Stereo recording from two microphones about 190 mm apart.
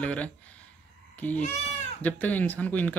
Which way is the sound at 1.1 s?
10° left (ahead or behind).